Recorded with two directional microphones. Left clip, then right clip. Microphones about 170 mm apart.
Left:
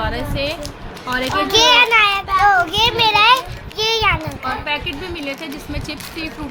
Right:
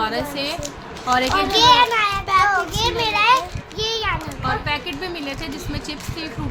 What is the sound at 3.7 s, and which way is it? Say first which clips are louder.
Children playing: left 6 dB; 50° left (ahead or behind).